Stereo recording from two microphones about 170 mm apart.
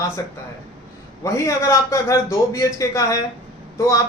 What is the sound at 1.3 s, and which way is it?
A man's voice, 15° left (ahead or behind).